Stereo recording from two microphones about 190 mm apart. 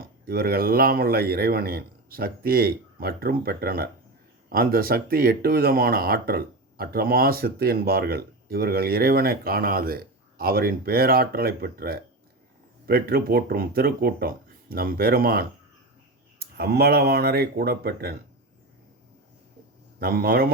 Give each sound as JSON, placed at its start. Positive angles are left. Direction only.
{"t": 0.0, "sound": "speech", "side_deg": -55}
{"t": 20.0, "sound": "speech", "side_deg": -50}